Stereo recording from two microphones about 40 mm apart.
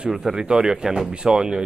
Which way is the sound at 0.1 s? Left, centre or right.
Centre.